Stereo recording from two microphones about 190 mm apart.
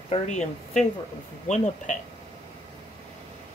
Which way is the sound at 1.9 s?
40° left (ahead or behind).